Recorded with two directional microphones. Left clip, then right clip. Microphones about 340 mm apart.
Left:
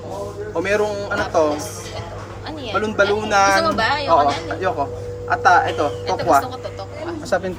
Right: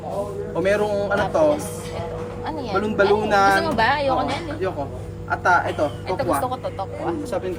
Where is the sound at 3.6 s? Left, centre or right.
Centre.